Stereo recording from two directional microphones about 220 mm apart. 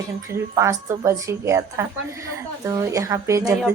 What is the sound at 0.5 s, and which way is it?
A woman's voice, 15° right (ahead or behind).